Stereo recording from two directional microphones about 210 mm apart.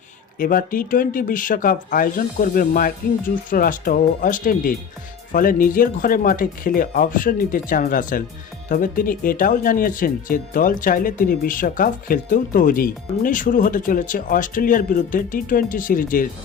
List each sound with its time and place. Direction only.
0.3 s speech: 40° left (ahead or behind)